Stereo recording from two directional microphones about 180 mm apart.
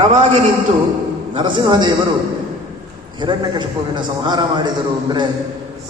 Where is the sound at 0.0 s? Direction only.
35° right (ahead or behind).